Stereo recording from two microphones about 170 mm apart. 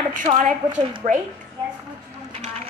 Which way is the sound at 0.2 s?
45° right (ahead or behind).